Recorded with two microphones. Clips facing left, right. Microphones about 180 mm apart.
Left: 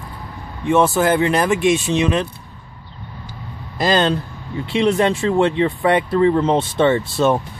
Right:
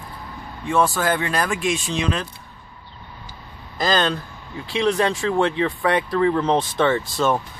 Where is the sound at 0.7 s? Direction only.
20° left (ahead or behind).